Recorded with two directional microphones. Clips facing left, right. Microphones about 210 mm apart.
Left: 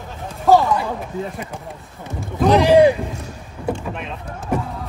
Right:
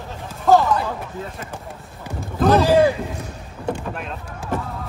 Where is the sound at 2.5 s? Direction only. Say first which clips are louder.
Left 3 dB; 15° left (ahead or behind).